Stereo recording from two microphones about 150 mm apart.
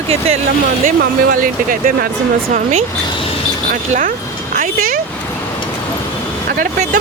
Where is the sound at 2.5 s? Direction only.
55° right (ahead or behind).